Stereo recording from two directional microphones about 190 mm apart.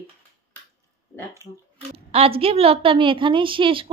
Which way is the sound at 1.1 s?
15° left (ahead or behind).